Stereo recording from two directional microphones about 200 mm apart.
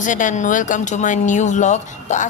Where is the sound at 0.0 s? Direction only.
40° left (ahead or behind).